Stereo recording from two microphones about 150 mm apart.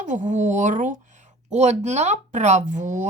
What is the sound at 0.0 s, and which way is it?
A woman's voice, 55° right (ahead or behind).